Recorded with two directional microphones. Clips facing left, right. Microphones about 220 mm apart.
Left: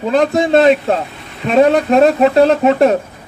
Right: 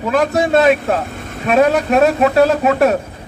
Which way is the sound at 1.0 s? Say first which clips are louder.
Right 6 dB; 50° right (ahead or behind).